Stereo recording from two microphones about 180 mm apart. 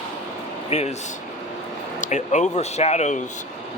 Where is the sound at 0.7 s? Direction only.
35° left (ahead or behind).